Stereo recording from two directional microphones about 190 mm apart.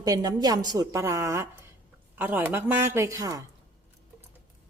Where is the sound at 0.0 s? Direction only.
20° right (ahead or behind).